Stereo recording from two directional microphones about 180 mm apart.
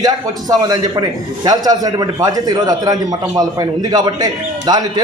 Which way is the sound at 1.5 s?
20° right (ahead or behind).